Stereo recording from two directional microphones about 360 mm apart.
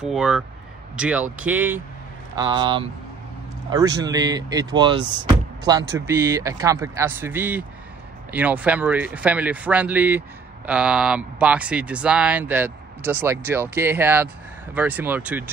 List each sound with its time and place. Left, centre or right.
0.0 s speech: centre